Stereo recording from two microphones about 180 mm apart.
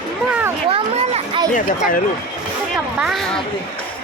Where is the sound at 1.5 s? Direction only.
50° left (ahead or behind).